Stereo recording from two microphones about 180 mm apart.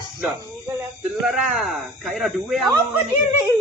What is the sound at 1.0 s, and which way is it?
Speech, centre (ahead or behind).